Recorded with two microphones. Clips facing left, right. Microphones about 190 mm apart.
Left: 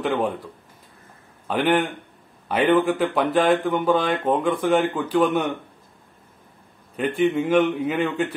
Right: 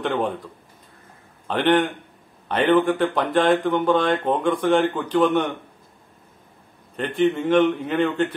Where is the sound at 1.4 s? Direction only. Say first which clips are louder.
Right 2 dB; 5° left (ahead or behind).